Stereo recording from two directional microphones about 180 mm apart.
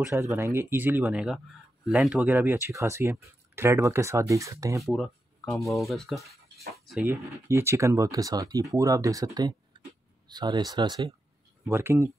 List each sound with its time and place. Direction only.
0.0 s speech: 15° right (ahead or behind)
4.8 s a sound: centre (ahead or behind)
5.7 s speech: centre (ahead or behind)
7.2 s speech: 15° right (ahead or behind)
11.7 s speech: 15° right (ahead or behind)